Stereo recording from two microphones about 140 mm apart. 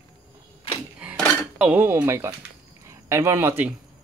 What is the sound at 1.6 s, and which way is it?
Speech, 10° right (ahead or behind).